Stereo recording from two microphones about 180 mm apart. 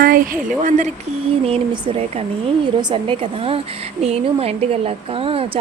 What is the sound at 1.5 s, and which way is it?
A woman's voice, 30° right (ahead or behind).